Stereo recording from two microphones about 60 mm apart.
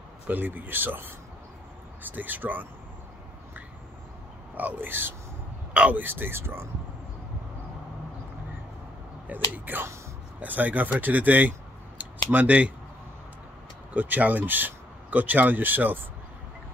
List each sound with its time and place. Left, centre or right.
0.3 s speech: right
2.1 s speech: right
4.6 s speech: right
5.7 s speech: centre
5.9 s speech: right
9.3 s speech: right
13.9 s speech: right